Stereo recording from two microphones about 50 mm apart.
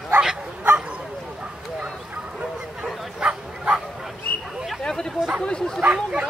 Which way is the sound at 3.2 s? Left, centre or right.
Centre.